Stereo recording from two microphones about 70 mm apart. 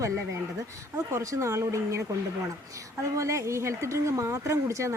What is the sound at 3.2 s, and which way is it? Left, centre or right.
Speech, right.